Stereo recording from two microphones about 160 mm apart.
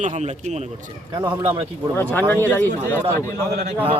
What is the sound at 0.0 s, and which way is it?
Speech, 50° right (ahead or behind).